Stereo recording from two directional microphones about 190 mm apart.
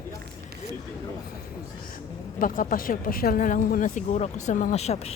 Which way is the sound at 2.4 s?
45° left (ahead or behind).